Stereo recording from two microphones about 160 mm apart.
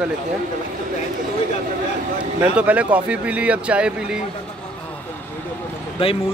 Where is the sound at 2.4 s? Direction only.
10° right (ahead or behind).